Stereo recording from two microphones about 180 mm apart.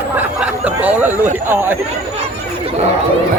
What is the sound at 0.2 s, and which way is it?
Speech, 5° right (ahead or behind).